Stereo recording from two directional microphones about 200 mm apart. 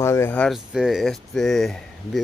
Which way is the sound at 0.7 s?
5° right (ahead or behind).